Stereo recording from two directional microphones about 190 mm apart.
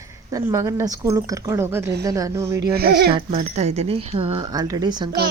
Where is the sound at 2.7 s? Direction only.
55° right (ahead or behind).